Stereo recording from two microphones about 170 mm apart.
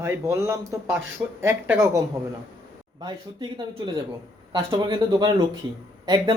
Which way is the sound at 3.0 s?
25° right (ahead or behind).